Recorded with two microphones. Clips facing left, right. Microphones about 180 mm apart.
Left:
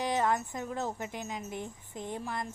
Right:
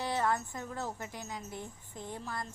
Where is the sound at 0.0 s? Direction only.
15° left (ahead or behind).